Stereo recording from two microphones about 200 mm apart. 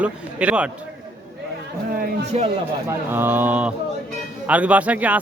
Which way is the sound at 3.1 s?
10° right (ahead or behind).